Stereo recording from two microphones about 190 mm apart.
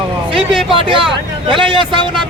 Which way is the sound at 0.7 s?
25° right (ahead or behind).